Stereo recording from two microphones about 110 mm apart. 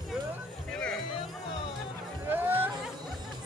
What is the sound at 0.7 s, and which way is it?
Music, 10° left (ahead or behind).